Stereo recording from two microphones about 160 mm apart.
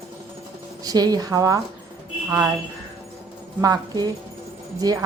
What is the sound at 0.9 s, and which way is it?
Speech, 25° right (ahead or behind).